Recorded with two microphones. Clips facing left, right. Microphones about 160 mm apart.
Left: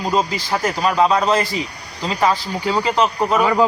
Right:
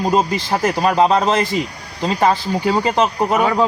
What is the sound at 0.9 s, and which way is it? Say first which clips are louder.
Speech: right 1 dB; 20° right (ahead or behind).